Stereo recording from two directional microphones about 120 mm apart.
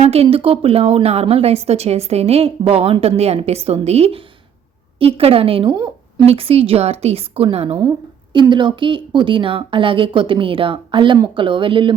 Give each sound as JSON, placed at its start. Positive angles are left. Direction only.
{"t": 0.0, "sound": "a woman's voice", "side_deg": -60}
{"t": 6.2, "sound": "a woman's voice", "side_deg": -55}
{"t": 8.3, "sound": "a woman's voice", "side_deg": -40}